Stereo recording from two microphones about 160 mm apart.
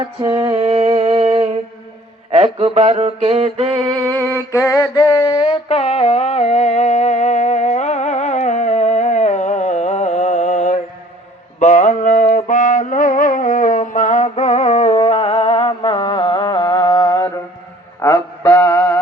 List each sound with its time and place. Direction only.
0.7 s music: 40° right (ahead or behind)
2.3 s mantra: 40° right (ahead or behind)
4.0 s a sound: 10° left (ahead or behind); by 10.8 s 45° left (ahead or behind)
11.6 s music: 45° left (ahead or behind); by 17.3 s 20° left (ahead or behind)
18.0 s mantra: 10° left (ahead or behind)